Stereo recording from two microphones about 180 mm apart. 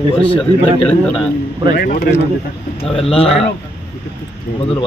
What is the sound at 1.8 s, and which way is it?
Speech, 50° left (ahead or behind).